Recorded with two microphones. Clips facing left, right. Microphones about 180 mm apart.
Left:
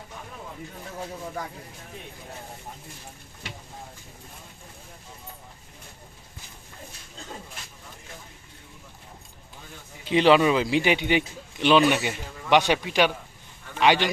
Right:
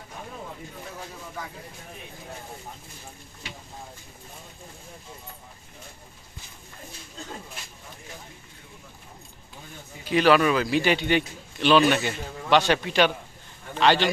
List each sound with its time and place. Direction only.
10.0 s a man's voice: 20° left (ahead or behind)